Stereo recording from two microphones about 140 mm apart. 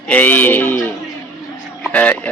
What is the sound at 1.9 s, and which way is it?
Speech, 10° left (ahead or behind).